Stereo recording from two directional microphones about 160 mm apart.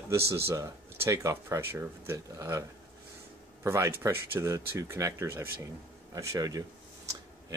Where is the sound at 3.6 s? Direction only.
15° right (ahead or behind).